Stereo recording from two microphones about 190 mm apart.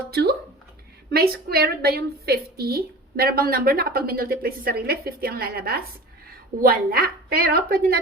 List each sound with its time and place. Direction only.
1.1 s a woman's voice: 55° right (ahead or behind)